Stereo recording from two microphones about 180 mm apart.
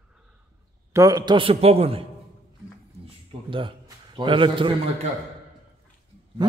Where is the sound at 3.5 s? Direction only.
30° right (ahead or behind).